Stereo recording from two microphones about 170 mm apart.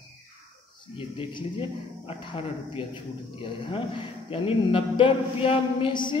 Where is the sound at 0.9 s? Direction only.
30° left (ahead or behind).